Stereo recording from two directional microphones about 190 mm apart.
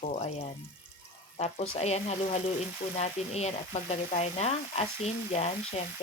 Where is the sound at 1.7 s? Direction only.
35° left (ahead or behind).